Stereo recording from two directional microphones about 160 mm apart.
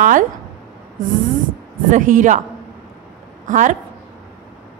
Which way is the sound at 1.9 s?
55° right (ahead or behind).